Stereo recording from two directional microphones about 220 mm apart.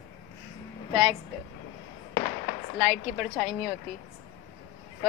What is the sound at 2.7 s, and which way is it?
Speech, centre (ahead or behind).